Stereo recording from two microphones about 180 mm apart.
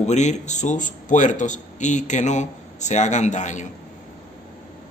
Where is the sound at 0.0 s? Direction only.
40° left (ahead or behind).